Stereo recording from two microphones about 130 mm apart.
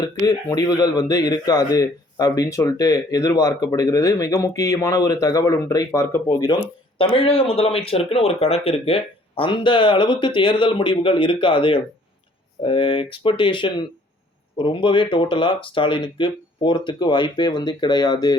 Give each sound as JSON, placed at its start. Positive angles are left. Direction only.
{"t": 0.3, "sound": "speech", "side_deg": 30}
{"t": 6.2, "sound": "speech", "side_deg": 30}
{"t": 7.0, "sound": "speech", "side_deg": 45}